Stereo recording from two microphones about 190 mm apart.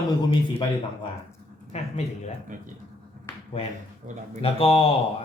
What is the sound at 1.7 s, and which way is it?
Speech, 35° left (ahead or behind).